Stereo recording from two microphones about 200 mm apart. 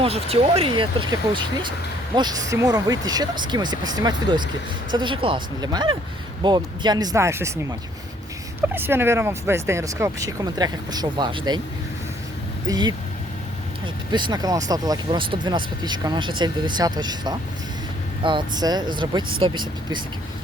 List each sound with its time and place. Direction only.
0.0 s speech: 30° right (ahead or behind)
12.6 s speech: 20° right (ahead or behind)